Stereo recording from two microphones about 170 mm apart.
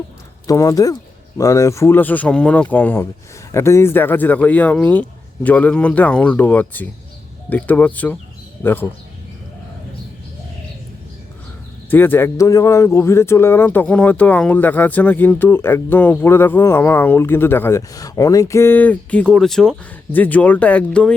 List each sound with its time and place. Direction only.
0.4 s a man's voice: 20° left (ahead or behind)
11.9 s a man's voice: 10° left (ahead or behind)